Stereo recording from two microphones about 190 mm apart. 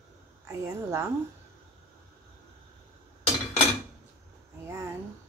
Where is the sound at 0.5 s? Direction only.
15° right (ahead or behind).